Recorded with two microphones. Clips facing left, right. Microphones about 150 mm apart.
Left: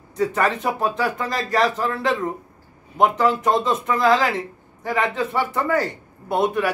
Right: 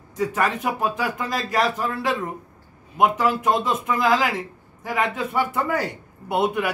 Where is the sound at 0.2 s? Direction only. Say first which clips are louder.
Left 2 dB; 5° right (ahead or behind).